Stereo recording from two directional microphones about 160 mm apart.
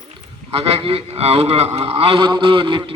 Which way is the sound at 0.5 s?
40° right (ahead or behind).